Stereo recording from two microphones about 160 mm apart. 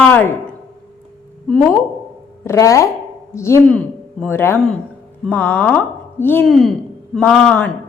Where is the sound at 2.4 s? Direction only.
20° left (ahead or behind).